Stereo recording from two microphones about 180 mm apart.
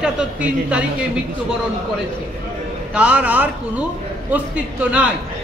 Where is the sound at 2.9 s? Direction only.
5° right (ahead or behind).